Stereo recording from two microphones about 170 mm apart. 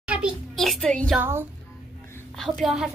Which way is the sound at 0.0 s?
5° right (ahead or behind).